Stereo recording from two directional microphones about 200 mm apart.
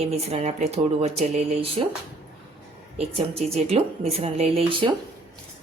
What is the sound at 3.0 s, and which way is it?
Speech, 30° right (ahead or behind).